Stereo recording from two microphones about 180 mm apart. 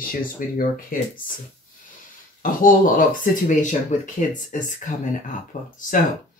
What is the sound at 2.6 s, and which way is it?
Speech, 50° left (ahead or behind).